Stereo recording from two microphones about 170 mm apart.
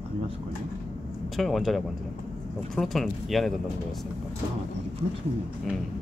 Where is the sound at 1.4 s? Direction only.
Centre (ahead or behind).